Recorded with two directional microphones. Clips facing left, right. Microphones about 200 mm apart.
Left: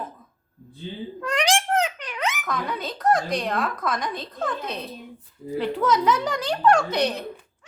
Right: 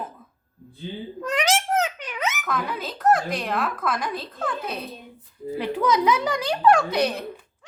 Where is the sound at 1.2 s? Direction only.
5° right (ahead or behind).